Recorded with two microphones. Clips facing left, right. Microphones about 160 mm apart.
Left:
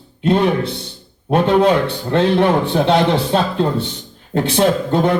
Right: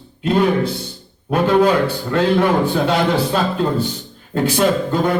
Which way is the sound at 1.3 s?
25° left (ahead or behind).